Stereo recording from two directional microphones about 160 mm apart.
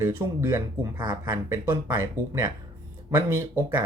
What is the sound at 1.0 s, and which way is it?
Speech, 30° right (ahead or behind).